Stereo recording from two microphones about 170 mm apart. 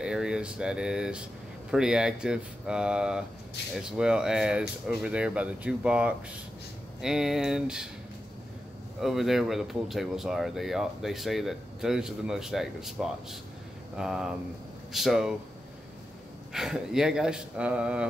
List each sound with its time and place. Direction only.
0.0 s speech: 5° right (ahead or behind)
9.0 s speech: centre (ahead or behind)
16.5 s speech: 5° right (ahead or behind)